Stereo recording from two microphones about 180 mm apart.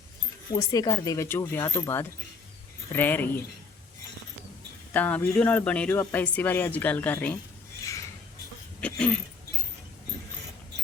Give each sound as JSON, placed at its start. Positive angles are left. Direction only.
{"t": 0.5, "sound": "speech", "side_deg": 20}
{"t": 4.9, "sound": "speech", "side_deg": 10}
{"t": 8.8, "sound": "speech", "side_deg": 5}